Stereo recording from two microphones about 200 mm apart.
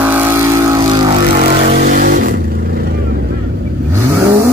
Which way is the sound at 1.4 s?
35° right (ahead or behind).